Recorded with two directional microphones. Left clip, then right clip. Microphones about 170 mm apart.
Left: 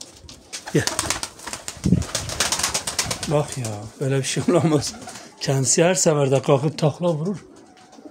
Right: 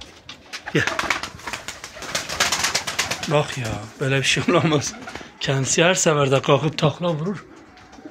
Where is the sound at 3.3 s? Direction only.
15° left (ahead or behind).